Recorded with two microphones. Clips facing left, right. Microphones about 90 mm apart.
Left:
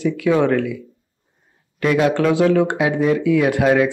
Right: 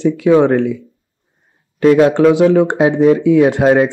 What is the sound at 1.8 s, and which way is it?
Speech, 30° right (ahead or behind).